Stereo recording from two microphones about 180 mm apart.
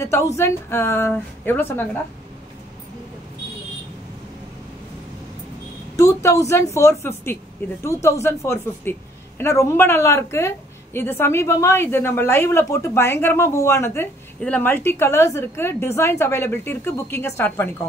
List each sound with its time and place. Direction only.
0.0 s a woman's voice: 15° left (ahead or behind)
5.9 s a woman's voice: 15° left (ahead or behind)